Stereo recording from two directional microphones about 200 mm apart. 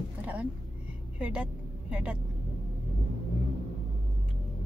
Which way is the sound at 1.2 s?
5° right (ahead or behind).